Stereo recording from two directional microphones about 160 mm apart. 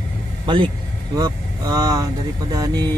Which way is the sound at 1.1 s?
25° right (ahead or behind).